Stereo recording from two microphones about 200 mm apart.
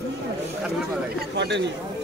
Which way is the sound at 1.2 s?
60° right (ahead or behind).